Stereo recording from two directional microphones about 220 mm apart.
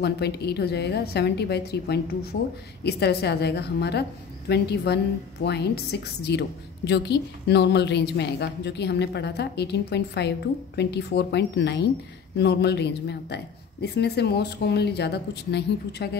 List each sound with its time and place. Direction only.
0.0 s a woman's voice: 50° left (ahead or behind)